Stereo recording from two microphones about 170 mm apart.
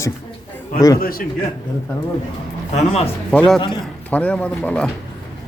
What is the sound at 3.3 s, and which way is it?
A man's voice, 5° left (ahead or behind).